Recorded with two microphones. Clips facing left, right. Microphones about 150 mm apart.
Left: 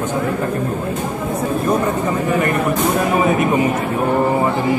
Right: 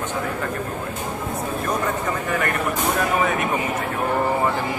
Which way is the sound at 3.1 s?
20° left (ahead or behind).